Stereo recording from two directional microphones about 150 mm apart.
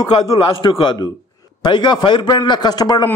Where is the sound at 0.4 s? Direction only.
35° left (ahead or behind).